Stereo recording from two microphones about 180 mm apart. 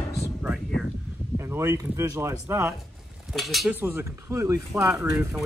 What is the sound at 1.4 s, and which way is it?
Speech, 15° right (ahead or behind).